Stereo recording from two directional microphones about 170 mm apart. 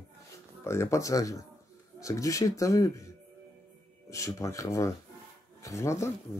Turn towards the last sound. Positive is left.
turn(degrees=15)  # may be behind; listen again after turning